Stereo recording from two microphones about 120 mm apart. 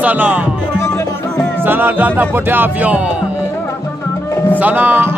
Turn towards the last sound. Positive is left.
turn(degrees=-15)  # may be behind; listen again after turning